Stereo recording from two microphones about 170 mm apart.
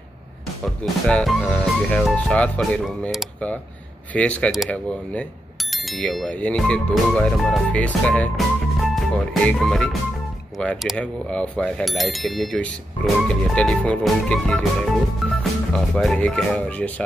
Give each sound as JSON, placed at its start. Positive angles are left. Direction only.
{"t": 1.0, "sound": "speech", "side_deg": 0}